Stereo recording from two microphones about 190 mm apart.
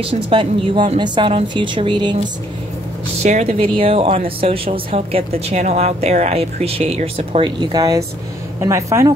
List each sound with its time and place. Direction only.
0.0 s a woman's voice: 30° right (ahead or behind)
3.2 s a woman's voice: 35° right (ahead or behind); by 9.1 s 15° right (ahead or behind)